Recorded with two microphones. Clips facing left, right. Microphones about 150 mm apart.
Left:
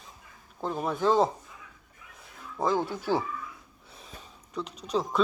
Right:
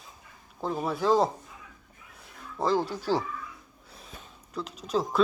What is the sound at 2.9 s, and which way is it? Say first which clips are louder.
Speech: even; 20° left (ahead or behind).